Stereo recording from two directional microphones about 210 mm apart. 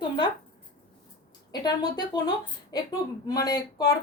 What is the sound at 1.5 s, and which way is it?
A woman's voice, 20° left (ahead or behind).